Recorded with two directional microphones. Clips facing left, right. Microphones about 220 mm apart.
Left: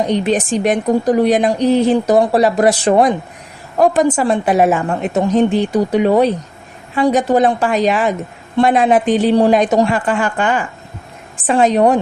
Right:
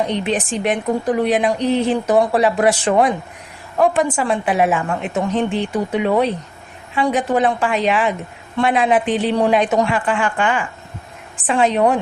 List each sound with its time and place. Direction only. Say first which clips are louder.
0.1 s a woman's voice: left 5 dB; 40° left (ahead or behind)